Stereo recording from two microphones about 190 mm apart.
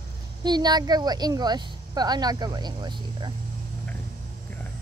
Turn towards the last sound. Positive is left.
turn(degrees=-20)  # may be behind; listen again after turning